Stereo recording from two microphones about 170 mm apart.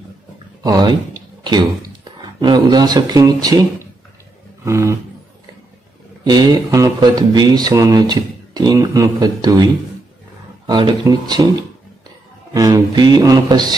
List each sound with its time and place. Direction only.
0.7 s speech: 25° right (ahead or behind)
4.6 s vehicle: 15° right (ahead or behind)
6.2 s speech: 25° right (ahead or behind)
10.7 s speech: 25° right (ahead or behind)
12.5 s speech: 20° right (ahead or behind)